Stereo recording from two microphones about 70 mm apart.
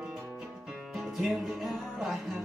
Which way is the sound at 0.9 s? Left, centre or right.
Centre.